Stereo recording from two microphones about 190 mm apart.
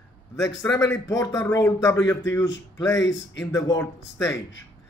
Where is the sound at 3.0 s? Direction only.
75° left (ahead or behind).